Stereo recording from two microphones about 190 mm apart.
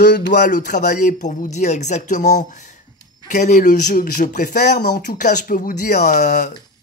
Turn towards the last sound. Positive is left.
turn(degrees=40)  # may be behind; listen again after turning